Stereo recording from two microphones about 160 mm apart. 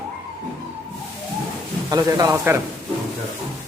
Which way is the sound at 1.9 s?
20° right (ahead or behind).